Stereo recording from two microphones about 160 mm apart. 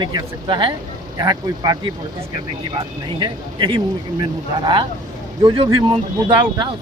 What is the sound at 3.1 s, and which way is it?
Speech, 30° right (ahead or behind).